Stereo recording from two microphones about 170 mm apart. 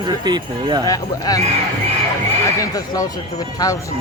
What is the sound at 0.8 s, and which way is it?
Speech, 20° left (ahead or behind).